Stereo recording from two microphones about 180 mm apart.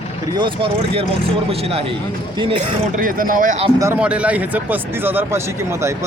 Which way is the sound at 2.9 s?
50° right (ahead or behind).